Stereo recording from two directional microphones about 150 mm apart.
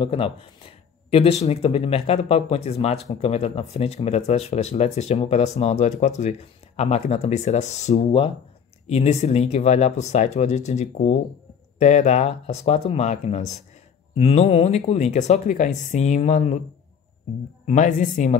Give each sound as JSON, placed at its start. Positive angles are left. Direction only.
{"t": 0.0, "sound": "speech", "side_deg": 40}
{"t": 17.6, "sound": "a woman's voice", "side_deg": 60}